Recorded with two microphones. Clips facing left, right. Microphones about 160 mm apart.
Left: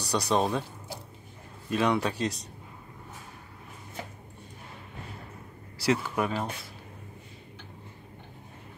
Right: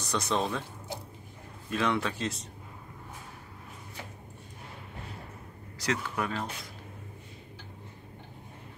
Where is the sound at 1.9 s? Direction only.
40° left (ahead or behind).